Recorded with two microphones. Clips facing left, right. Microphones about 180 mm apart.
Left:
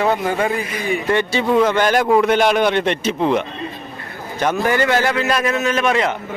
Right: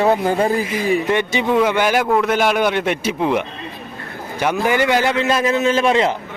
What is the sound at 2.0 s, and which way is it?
Speech, 10° left (ahead or behind).